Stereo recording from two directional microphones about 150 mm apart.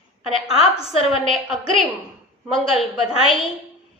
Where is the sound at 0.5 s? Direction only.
40° left (ahead or behind).